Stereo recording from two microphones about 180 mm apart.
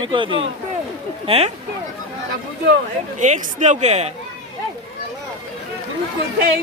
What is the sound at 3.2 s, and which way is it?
Speech, 45° right (ahead or behind).